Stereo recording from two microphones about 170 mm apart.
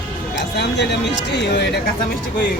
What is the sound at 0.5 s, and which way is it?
Speech, 80° left.